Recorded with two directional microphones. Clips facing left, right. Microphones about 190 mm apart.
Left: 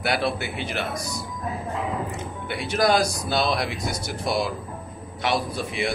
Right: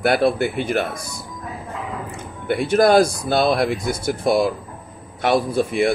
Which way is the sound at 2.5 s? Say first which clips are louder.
Right 7 dB; 50° right (ahead or behind).